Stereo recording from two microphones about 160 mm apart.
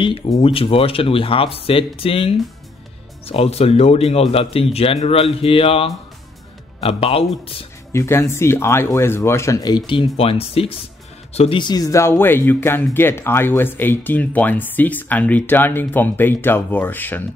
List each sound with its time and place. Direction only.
0.4 s speech: 35° left (ahead or behind)
7.9 s speech: 15° left (ahead or behind)